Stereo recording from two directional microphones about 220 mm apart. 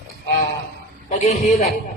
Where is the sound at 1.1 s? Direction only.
30° left (ahead or behind).